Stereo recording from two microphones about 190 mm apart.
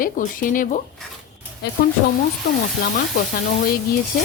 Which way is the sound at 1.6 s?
60° left (ahead or behind).